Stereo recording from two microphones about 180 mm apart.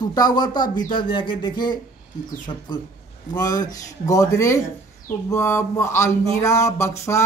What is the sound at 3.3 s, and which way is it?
A man's voice, 20° left (ahead or behind).